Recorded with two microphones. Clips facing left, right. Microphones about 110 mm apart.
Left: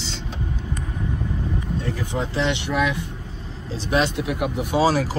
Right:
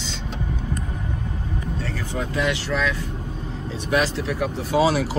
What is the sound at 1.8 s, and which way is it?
Speech, 15° left (ahead or behind).